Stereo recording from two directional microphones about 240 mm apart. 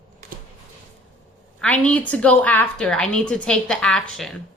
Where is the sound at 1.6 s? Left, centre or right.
Centre.